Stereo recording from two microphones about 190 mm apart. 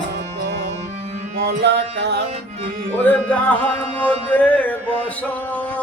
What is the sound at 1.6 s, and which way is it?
Music, 65° right (ahead or behind).